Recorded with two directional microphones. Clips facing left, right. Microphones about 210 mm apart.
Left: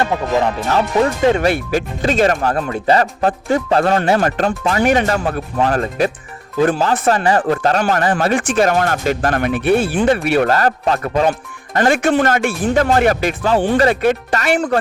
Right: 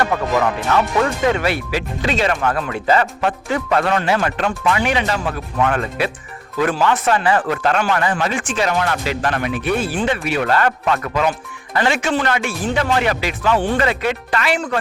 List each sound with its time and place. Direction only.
0.0 s speech: 25° left (ahead or behind)
1.5 s speech: 45° left (ahead or behind)
5.5 s speech: 35° left (ahead or behind)
8.3 s speech: 50° left (ahead or behind)
10.3 s speech: 45° left (ahead or behind)
11.3 s speech: 45° left (ahead or behind)
13.4 s speech: 35° left (ahead or behind)
14.0 s speech: 45° left (ahead or behind)